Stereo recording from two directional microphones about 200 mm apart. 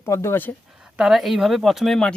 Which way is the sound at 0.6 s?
Centre (ahead or behind).